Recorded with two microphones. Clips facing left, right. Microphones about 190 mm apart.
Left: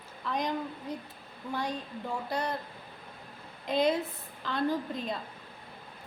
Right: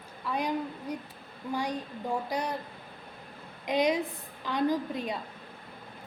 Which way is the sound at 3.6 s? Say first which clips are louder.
Right 1 dB; 15° right (ahead or behind).